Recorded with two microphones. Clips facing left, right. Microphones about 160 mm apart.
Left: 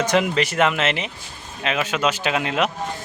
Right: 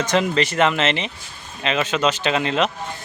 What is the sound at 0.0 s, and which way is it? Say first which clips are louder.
Speech: even; 10° left (ahead or behind).